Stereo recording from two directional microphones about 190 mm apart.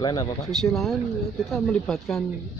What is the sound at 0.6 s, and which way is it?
Speech, centre (ahead or behind).